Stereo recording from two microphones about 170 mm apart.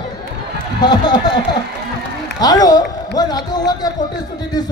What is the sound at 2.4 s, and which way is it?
Speech, 20° left (ahead or behind).